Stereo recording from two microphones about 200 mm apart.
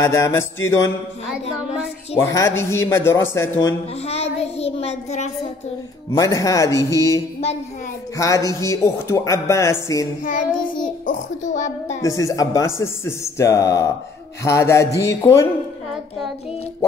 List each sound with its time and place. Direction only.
0.0 s speech: 15° left (ahead or behind)
2.1 s speech: 15° left (ahead or behind)
4.1 s child singing: 30° left (ahead or behind)
6.1 s speech: 15° left (ahead or behind)
10.2 s a child's voice: 40° left (ahead or behind)
12.0 s speech: 15° left (ahead or behind)